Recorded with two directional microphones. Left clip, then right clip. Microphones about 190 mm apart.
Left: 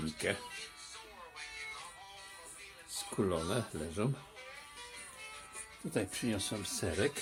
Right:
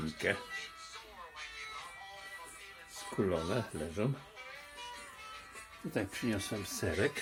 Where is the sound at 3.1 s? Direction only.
5° left (ahead or behind).